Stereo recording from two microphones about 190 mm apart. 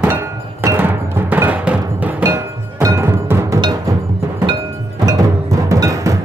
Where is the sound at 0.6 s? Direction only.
15° right (ahead or behind).